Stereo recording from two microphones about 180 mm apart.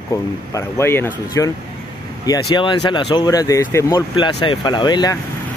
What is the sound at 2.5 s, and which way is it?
Speech, 25° left (ahead or behind).